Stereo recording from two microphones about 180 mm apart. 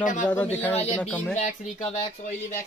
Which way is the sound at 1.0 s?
5° left (ahead or behind).